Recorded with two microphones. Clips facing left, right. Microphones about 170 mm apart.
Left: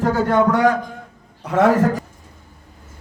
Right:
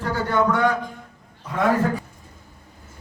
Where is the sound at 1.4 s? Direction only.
85° left.